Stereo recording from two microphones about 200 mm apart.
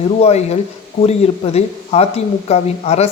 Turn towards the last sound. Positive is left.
turn(degrees=30)  # may be behind; listen again after turning